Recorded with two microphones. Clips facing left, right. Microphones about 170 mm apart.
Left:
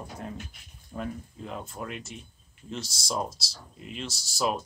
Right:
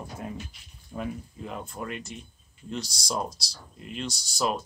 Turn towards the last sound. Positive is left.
turn(degrees=0)  # may be behind; listen again after turning